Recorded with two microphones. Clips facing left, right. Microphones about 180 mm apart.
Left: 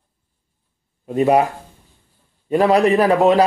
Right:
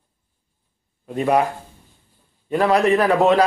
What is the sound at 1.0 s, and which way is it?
Speech, 20° left (ahead or behind).